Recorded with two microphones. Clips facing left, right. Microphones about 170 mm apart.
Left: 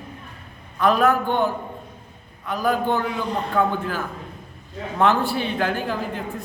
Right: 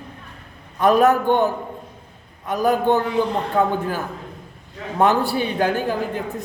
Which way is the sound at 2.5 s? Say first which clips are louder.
Right 3 dB; 45° right (ahead or behind).